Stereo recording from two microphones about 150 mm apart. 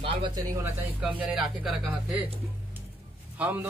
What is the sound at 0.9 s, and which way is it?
A man's voice, 10° right (ahead or behind).